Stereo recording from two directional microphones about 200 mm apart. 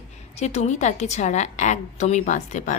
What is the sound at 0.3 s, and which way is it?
A woman's voice, 35° left (ahead or behind).